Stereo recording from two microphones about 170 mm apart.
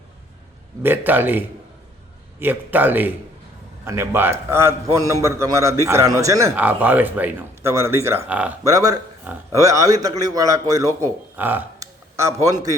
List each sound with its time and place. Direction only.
0.8 s a man's voice: 10° right (ahead or behind)
8.6 s speech: 20° right (ahead or behind)